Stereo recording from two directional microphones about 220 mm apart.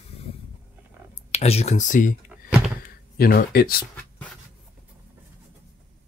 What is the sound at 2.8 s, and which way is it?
Speech, 40° left (ahead or behind).